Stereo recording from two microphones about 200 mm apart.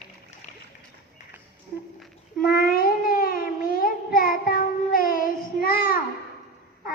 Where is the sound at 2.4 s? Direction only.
45° left (ahead or behind).